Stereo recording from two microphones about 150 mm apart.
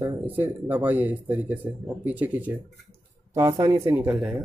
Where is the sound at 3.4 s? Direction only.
20° right (ahead or behind).